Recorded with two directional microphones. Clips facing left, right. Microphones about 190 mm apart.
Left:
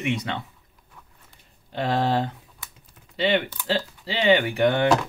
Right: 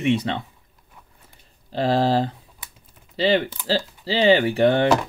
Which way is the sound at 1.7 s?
30° right (ahead or behind).